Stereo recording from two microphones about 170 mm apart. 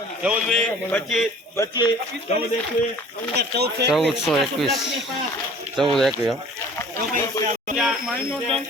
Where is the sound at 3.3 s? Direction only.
70° right (ahead or behind).